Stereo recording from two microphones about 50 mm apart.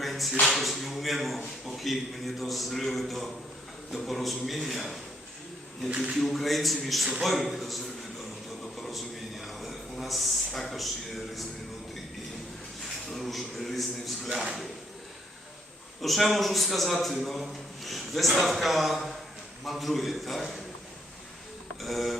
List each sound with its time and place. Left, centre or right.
0.0 s a sound: centre
0.4 s a man's voice: centre
6.1 s a man's voice: centre
8.8 s a sound: centre
13.1 s a man's voice: centre
14.3 s speech: centre
16.0 s a man's voice: centre
21.8 s a man's voice: centre